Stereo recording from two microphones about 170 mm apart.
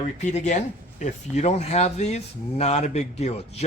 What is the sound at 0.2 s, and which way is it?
Speech, 45° left (ahead or behind).